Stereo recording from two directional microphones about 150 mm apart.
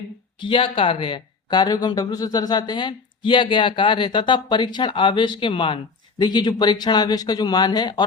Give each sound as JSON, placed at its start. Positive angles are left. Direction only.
{"t": 0.3, "sound": "speech", "side_deg": 35}